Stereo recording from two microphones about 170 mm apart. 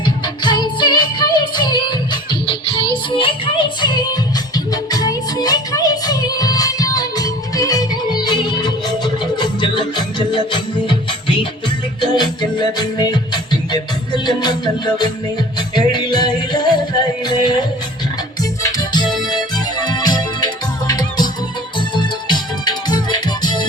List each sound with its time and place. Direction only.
0.0 s music: 25° left (ahead or behind)